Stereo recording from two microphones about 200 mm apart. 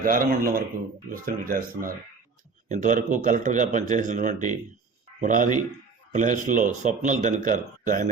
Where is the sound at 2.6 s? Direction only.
40° right (ahead or behind).